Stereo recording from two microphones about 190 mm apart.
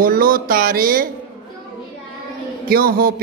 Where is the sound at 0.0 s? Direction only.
50° right (ahead or behind).